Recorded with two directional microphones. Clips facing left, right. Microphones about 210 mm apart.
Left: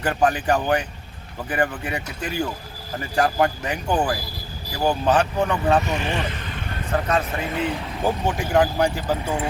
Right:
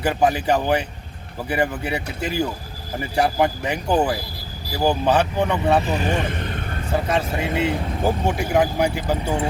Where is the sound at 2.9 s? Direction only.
10° right (ahead or behind).